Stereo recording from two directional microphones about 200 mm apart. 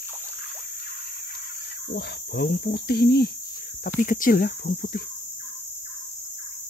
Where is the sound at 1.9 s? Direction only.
55° left (ahead or behind).